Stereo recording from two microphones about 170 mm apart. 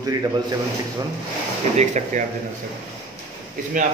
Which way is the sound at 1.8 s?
45° right (ahead or behind).